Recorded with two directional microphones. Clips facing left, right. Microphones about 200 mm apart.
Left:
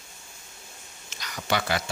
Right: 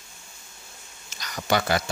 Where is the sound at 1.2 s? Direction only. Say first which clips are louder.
Right 3 dB; 45° right (ahead or behind).